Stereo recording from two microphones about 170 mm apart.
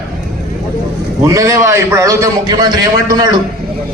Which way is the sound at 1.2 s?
20° right (ahead or behind).